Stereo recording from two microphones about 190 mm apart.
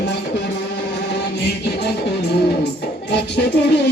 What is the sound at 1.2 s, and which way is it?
Music, 60° left (ahead or behind).